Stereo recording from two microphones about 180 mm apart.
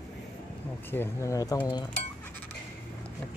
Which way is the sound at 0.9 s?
15° left (ahead or behind).